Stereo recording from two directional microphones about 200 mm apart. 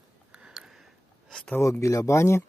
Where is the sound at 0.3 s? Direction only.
5° right (ahead or behind).